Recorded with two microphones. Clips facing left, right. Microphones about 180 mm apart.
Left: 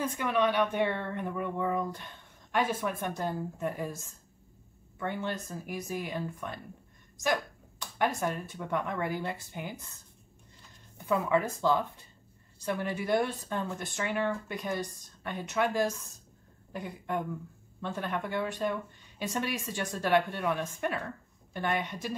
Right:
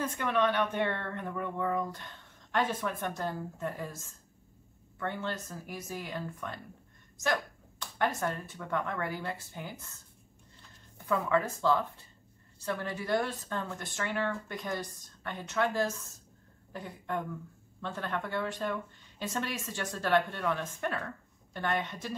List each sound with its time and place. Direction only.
0.0 s speech: 10° left (ahead or behind)
7.8 s speech: 15° left (ahead or behind)
11.1 s speech: 15° left (ahead or behind)